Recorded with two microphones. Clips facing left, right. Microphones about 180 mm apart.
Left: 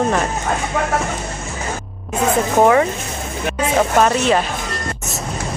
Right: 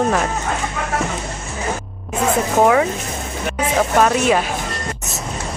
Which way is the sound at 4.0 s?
5° right (ahead or behind).